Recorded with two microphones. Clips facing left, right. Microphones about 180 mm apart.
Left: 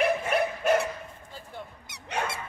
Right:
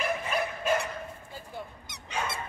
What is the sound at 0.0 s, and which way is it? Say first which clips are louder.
Dog: left 5 dB; 65° left (ahead or behind).